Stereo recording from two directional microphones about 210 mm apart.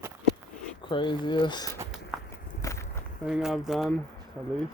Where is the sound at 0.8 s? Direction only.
20° left (ahead or behind).